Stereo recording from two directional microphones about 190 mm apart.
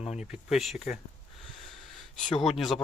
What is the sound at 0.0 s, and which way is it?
Speech, 35° left (ahead or behind).